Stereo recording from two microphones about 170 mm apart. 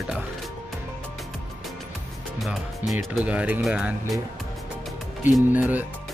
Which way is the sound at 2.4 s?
Centre (ahead or behind).